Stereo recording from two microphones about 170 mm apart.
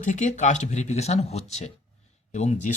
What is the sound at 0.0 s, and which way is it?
Speech, 45° left (ahead or behind).